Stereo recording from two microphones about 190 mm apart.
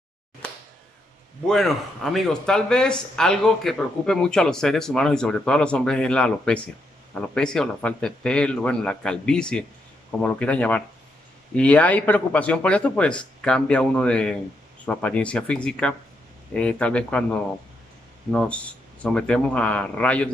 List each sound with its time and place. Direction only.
1.4 s speech: centre (ahead or behind)